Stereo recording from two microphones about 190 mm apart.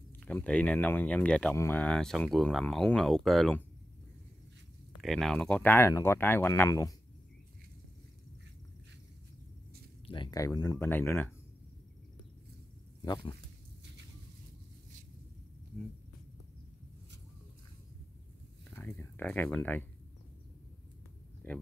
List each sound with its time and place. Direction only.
0.2 s speech: 10° left (ahead or behind)
5.0 s speech: centre (ahead or behind)
10.0 s speech: 25° left (ahead or behind)
13.0 s speech: 25° left (ahead or behind)
18.8 s speech: 10° left (ahead or behind)